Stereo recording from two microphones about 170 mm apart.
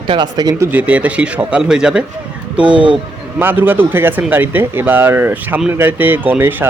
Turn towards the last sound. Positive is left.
turn(degrees=-10)  # may be behind; listen again after turning